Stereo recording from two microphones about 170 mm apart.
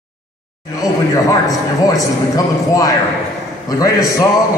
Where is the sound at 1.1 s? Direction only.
20° left (ahead or behind).